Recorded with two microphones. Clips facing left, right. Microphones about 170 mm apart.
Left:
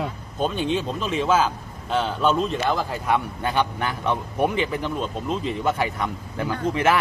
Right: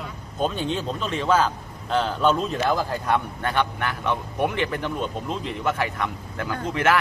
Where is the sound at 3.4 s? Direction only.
15° left (ahead or behind).